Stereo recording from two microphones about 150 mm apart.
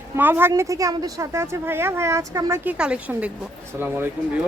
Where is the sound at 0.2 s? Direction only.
15° right (ahead or behind).